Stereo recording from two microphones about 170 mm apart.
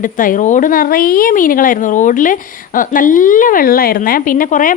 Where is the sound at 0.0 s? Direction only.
50° left (ahead or behind).